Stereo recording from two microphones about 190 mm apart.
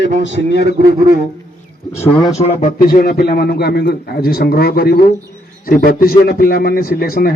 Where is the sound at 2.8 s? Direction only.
50° left (ahead or behind).